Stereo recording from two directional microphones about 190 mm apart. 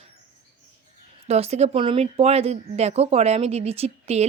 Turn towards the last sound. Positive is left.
turn(degrees=-35)  # may be behind; listen again after turning